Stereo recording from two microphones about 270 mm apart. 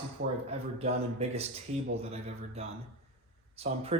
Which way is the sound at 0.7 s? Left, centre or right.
Right.